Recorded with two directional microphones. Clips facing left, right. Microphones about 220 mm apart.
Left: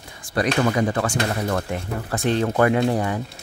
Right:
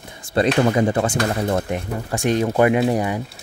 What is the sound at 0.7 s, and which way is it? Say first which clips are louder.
Speech: right 3 dB; 25° right (ahead or behind).